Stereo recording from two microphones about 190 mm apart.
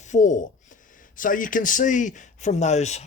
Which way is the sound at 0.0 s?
40° left (ahead or behind).